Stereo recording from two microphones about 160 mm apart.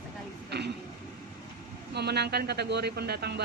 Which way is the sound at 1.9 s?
90° right.